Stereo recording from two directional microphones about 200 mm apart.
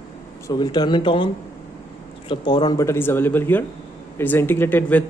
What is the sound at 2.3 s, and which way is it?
Speech, 20° left (ahead or behind).